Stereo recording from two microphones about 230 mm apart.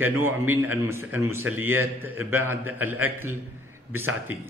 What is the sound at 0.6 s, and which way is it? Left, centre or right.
A man's voice, centre.